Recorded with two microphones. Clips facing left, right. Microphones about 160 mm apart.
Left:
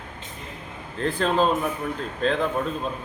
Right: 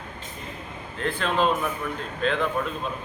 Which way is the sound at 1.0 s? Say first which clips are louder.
Left 2 dB; 35° left (ahead or behind).